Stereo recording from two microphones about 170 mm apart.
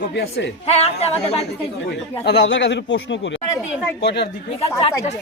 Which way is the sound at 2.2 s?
90° left.